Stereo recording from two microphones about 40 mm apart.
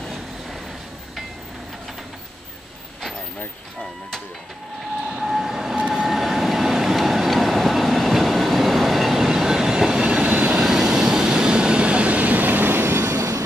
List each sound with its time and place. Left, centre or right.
5.1 s train: centre
10.0 s train: right
10.3 s vehicle: right
10.6 s train: centre; by 13.1 s right